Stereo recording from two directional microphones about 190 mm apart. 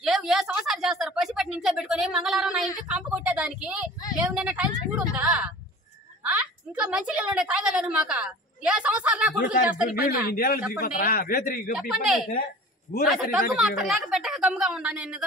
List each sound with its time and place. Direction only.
0.0 s a sound: centre (ahead or behind)
7.9 s a woman's voice: 5° right (ahead or behind)
9.8 s speech: 50° left (ahead or behind)
11.7 s a woman's voice: centre (ahead or behind)
12.9 s speech: 50° left (ahead or behind)
13.6 s a woman's voice: centre (ahead or behind)